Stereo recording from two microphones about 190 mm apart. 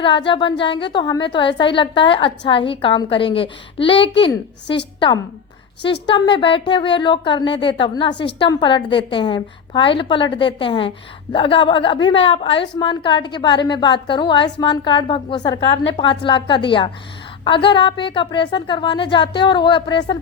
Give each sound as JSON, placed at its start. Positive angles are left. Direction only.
{"t": 0.3, "sound": "a woman's voice", "side_deg": 25}